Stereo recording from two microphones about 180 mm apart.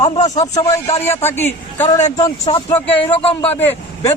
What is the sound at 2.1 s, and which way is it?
Speech, 25° left (ahead or behind).